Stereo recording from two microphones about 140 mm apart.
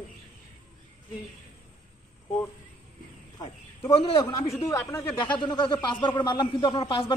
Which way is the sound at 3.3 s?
35° left (ahead or behind).